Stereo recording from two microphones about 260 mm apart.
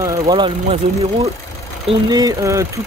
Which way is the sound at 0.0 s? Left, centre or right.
Centre.